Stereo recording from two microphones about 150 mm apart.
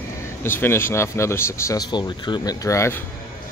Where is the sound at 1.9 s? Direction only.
30° left (ahead or behind).